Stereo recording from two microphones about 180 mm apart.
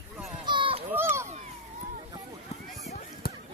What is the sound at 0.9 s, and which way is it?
Run, 15° right (ahead or behind).